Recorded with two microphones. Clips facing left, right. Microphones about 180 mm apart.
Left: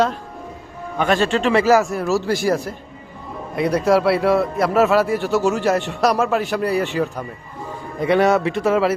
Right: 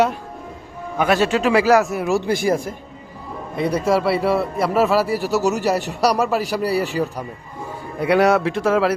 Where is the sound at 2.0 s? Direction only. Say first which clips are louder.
Even; 15° right (ahead or behind).